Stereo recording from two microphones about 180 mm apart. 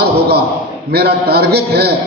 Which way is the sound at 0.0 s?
65° right (ahead or behind).